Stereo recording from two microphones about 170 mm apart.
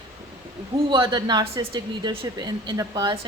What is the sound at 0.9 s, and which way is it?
A woman's voice, 25° right (ahead or behind).